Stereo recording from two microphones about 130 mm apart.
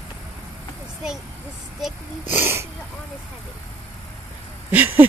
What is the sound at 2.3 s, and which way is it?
Speech, 20° right (ahead or behind).